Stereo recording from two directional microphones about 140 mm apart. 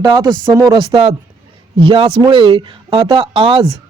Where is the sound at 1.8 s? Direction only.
35° right (ahead or behind).